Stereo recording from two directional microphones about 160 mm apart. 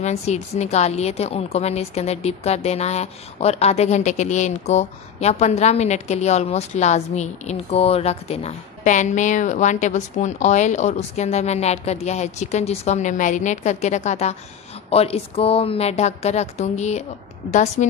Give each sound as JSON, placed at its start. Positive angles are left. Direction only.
{"t": 0.0, "sound": "a woman's voice", "side_deg": 45}